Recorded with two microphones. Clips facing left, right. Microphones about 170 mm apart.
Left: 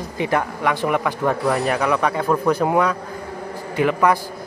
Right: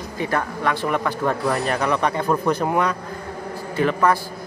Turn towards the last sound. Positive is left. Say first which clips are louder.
# left 1 dB
turn(degrees=15)  # may be behind; listen again after turning